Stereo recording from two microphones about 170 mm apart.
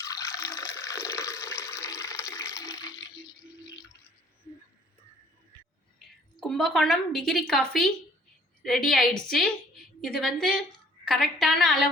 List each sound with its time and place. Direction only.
0.0 s water: 20° left (ahead or behind)
6.4 s a woman's voice: centre (ahead or behind)